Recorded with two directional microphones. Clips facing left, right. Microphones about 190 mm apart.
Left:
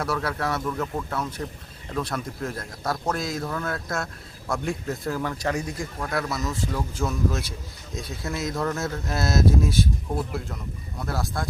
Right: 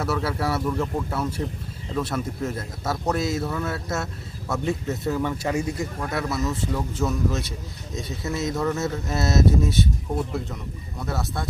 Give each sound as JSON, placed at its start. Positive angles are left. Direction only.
{"t": 0.0, "sound": "speech", "side_deg": -5}